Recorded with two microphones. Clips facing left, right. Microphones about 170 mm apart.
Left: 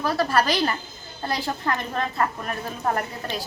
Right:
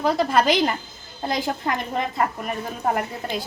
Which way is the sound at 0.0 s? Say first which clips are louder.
Right 3 dB; 20° right (ahead or behind).